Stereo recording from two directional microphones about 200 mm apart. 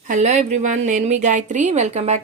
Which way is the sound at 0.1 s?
35° right (ahead or behind).